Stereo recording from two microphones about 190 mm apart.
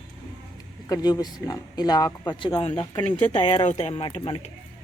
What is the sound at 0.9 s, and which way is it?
Speech, 20° left (ahead or behind).